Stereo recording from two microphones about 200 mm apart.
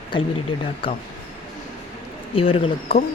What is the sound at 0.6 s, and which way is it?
Speech, 25° left (ahead or behind).